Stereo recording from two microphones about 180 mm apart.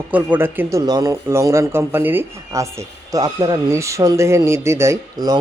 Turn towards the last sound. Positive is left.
turn(degrees=-20)  # may be behind; listen again after turning